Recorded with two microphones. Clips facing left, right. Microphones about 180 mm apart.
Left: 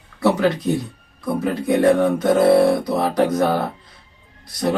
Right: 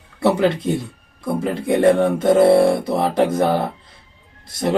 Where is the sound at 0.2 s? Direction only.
25° right (ahead or behind).